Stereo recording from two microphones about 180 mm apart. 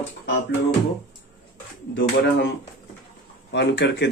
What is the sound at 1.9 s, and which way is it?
Speech, 70° left (ahead or behind).